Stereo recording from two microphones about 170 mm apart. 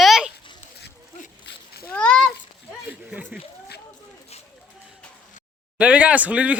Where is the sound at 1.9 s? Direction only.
5° left (ahead or behind).